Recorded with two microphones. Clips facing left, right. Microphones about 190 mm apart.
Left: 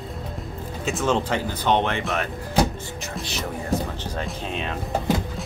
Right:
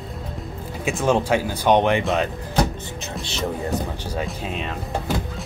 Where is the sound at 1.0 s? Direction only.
10° right (ahead or behind).